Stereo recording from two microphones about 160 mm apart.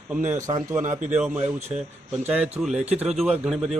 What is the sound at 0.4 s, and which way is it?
Speech, 20° right (ahead or behind).